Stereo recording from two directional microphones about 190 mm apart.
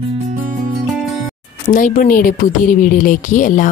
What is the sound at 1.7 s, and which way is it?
A woman's voice, 45° left (ahead or behind).